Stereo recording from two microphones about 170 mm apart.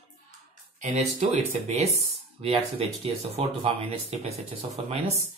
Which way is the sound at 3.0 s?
35° right (ahead or behind).